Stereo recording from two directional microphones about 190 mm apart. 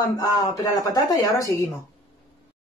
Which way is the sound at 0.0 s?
20° left (ahead or behind).